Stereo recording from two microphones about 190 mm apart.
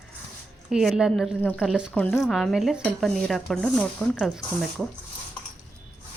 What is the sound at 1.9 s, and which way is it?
Speech, 10° left (ahead or behind).